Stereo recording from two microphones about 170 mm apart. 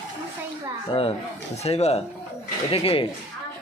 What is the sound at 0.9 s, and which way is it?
Speech, 30° left (ahead or behind).